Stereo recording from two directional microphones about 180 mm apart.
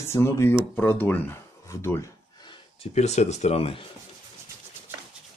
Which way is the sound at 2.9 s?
40° left (ahead or behind).